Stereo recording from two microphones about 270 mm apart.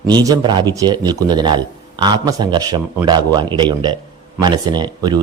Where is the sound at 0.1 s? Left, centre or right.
Centre.